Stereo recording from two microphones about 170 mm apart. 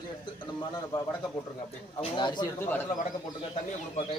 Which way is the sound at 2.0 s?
30° left (ahead or behind).